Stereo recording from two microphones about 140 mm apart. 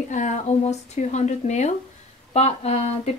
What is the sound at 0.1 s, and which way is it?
Speech, 60° left (ahead or behind).